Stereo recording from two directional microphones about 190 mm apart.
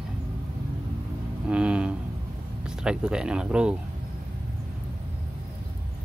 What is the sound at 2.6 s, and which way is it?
Speech, 5° right (ahead or behind).